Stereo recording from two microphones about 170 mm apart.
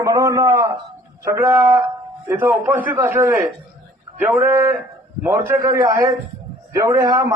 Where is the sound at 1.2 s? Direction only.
15° right (ahead or behind).